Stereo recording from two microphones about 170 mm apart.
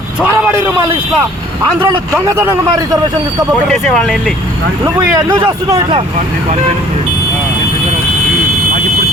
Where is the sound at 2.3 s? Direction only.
20° right (ahead or behind).